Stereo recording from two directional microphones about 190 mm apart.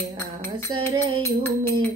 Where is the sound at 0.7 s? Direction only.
25° right (ahead or behind).